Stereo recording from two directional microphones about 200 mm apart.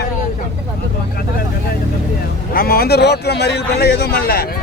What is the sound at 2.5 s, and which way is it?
A man's voice, 50° left (ahead or behind).